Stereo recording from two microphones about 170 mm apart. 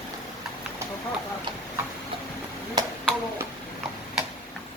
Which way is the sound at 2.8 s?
25° right (ahead or behind).